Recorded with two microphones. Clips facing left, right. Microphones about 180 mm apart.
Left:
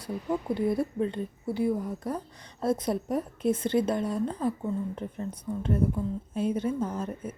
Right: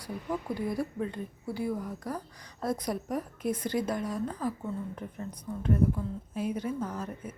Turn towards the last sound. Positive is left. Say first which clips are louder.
# left 4 dB
turn(degrees=25)  # may be behind; listen again after turning